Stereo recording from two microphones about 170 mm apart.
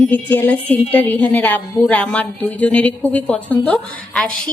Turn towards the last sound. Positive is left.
turn(degrees=5)  # may be behind; listen again after turning